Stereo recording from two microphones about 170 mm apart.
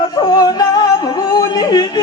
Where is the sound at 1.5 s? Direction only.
25° left (ahead or behind).